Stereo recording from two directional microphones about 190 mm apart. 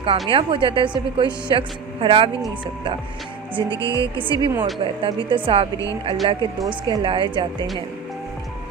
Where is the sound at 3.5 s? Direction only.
25° right (ahead or behind).